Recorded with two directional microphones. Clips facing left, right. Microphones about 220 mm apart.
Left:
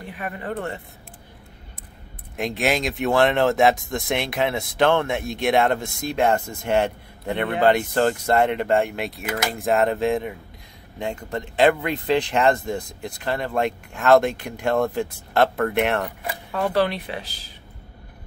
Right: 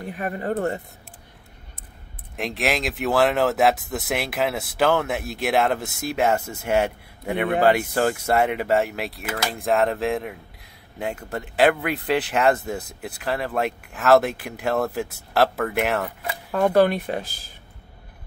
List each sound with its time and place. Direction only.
0.1 s speech: 40° right (ahead or behind)
2.3 s speech: centre (ahead or behind)
16.5 s speech: 50° right (ahead or behind)